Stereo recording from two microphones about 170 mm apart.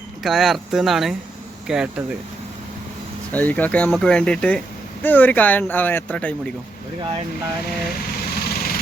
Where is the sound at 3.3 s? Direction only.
10° left (ahead or behind).